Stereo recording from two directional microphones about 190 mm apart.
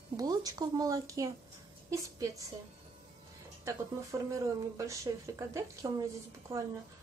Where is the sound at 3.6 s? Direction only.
15° right (ahead or behind).